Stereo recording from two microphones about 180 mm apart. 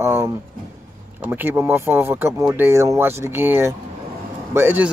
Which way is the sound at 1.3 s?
10° right (ahead or behind).